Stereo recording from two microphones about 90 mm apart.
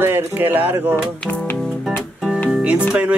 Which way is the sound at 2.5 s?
15° right (ahead or behind).